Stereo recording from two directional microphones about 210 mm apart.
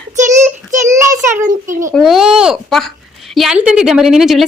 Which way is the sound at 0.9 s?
15° right (ahead or behind).